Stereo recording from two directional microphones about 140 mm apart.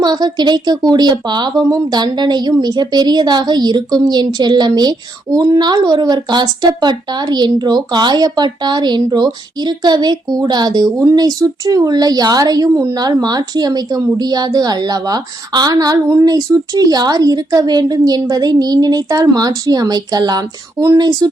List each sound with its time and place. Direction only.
0.0 s speech: 30° right (ahead or behind)